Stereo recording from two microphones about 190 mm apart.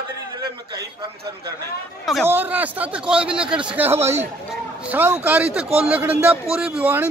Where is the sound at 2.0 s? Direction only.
Centre (ahead or behind).